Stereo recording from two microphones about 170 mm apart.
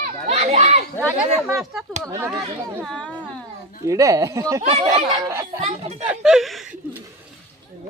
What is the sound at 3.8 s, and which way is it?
Speech, 20° right (ahead or behind).